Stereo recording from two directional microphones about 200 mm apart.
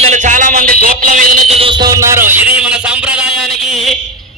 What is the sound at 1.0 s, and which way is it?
Music, 40° right (ahead or behind).